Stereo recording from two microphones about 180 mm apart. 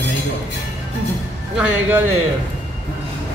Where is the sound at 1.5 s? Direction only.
10° right (ahead or behind).